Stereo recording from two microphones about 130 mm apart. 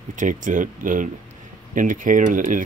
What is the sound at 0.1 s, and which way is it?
Speech, 85° right.